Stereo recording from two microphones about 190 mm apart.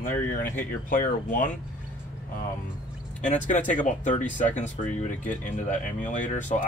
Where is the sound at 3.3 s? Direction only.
40° left (ahead or behind).